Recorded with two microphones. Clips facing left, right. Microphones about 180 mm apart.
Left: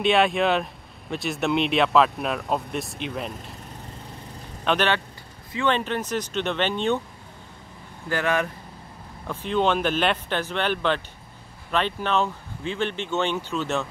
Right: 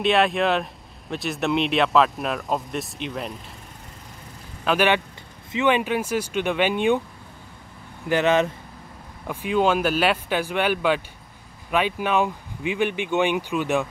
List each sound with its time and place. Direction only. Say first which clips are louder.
0.0 s speech: even; centre (ahead or behind)
4.6 s speech: right 3 dB; 10° right (ahead or behind)
8.1 s speech: right 5 dB; 20° right (ahead or behind)
9.3 s speech: right 2 dB; 10° right (ahead or behind)